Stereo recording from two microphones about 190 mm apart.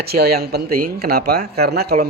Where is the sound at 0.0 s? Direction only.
55° right (ahead or behind).